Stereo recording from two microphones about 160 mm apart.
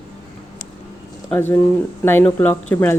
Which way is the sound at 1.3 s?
10° left (ahead or behind).